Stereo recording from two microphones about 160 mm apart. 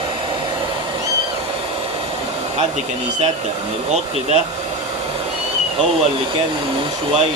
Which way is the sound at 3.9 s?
45° right (ahead or behind).